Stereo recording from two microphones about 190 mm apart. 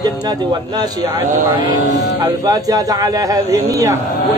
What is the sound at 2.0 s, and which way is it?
Speech, 20° right (ahead or behind).